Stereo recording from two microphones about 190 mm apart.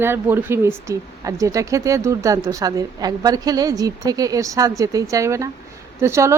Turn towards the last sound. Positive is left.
turn(degrees=-15)  # may be behind; listen again after turning